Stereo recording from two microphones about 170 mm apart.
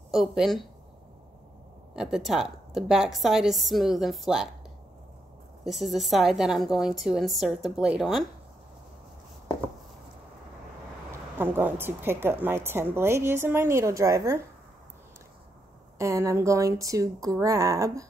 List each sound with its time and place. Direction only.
0.1 s a woman's voice: centre (ahead or behind)
2.0 s a woman's voice: centre (ahead or behind)
5.6 s a woman's voice: centre (ahead or behind)
11.1 s a woman's voice: 10° right (ahead or behind)
16.0 s speech: 15° right (ahead or behind)